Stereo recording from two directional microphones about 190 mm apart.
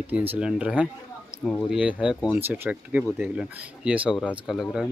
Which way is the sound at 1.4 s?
5° left (ahead or behind).